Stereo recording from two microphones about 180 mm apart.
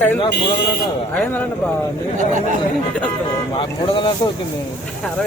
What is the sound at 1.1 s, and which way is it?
Speech, 10° left (ahead or behind).